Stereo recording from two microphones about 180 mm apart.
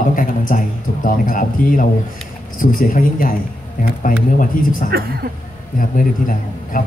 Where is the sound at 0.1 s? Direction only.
50° left (ahead or behind).